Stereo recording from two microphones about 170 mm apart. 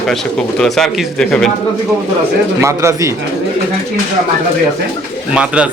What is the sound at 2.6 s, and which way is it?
Speech, 15° right (ahead or behind).